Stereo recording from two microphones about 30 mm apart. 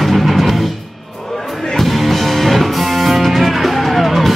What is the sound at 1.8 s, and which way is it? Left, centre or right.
Music, centre.